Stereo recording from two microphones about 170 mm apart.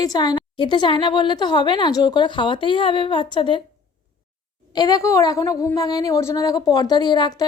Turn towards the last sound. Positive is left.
turn(degrees=25)  # may be behind; listen again after turning